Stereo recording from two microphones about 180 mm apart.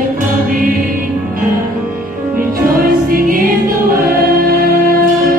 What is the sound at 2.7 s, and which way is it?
Music, 50° right (ahead or behind).